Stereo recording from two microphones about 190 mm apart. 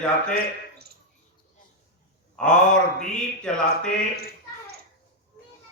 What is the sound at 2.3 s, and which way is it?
Speech, 5° left (ahead or behind).